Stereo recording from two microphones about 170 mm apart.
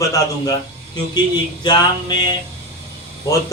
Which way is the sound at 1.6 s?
25° left (ahead or behind).